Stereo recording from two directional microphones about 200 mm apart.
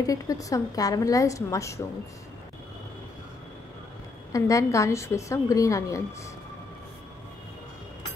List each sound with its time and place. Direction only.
0.0 s a woman's voice: 15° left (ahead or behind)
4.3 s a woman's voice: 15° left (ahead or behind)